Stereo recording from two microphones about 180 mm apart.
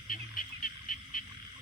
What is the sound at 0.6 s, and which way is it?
Frog, 50° left (ahead or behind).